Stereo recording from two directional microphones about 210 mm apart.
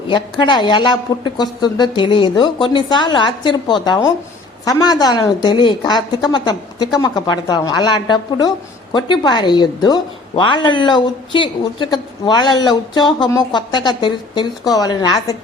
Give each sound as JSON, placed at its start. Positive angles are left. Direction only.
{"t": 0.1, "sound": "a woman's voice", "side_deg": 20}